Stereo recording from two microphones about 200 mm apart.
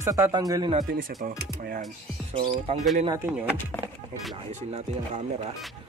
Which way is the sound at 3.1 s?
15° right (ahead or behind).